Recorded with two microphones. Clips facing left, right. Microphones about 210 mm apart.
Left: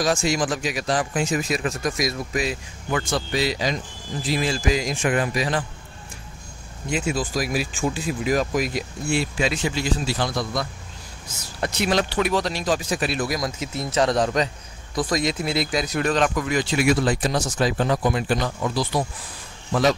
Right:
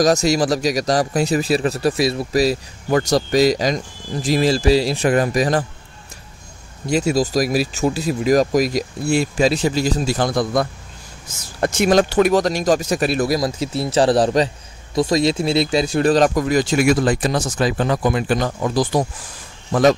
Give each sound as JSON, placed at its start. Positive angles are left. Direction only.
{"t": 0.0, "sound": "speech", "side_deg": -40}
{"t": 6.9, "sound": "speech", "side_deg": -40}
{"t": 18.4, "sound": "speech", "side_deg": -45}